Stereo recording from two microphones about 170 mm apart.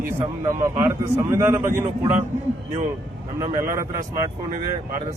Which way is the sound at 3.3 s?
20° right (ahead or behind).